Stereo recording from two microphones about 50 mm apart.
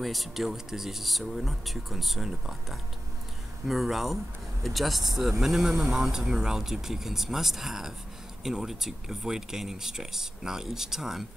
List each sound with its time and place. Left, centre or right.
0.0 s speech: centre